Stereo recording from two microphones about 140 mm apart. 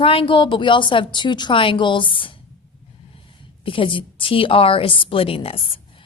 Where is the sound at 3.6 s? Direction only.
40° left (ahead or behind).